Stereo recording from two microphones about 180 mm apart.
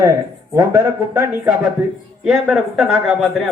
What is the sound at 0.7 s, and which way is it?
Speech, 15° right (ahead or behind).